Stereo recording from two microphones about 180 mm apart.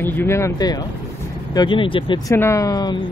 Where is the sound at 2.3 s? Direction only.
15° left (ahead or behind).